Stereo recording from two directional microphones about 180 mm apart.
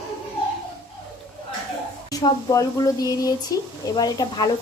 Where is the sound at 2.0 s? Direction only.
20° left (ahead or behind).